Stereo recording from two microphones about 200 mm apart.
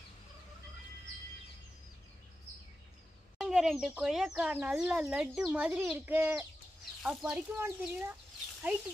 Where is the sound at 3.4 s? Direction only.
Centre (ahead or behind).